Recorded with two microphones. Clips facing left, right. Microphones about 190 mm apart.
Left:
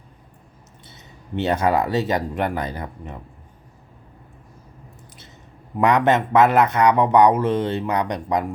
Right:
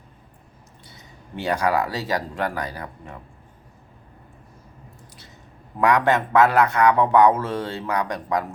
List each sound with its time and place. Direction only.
0.9 s speech: 25° left (ahead or behind)
5.8 s speech: 20° left (ahead or behind)